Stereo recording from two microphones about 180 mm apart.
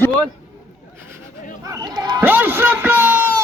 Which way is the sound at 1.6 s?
20° right (ahead or behind).